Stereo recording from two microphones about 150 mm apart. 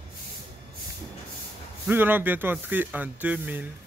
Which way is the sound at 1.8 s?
15° right (ahead or behind).